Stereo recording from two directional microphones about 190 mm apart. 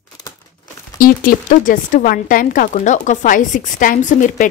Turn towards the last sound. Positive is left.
turn(degrees=40)  # may be behind; listen again after turning